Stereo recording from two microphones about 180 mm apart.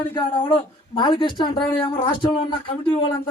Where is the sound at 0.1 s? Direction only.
20° left (ahead or behind).